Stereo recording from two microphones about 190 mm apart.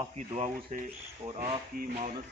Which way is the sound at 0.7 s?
45° right (ahead or behind).